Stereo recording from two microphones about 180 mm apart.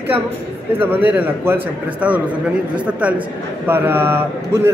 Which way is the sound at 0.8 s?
10° right (ahead or behind).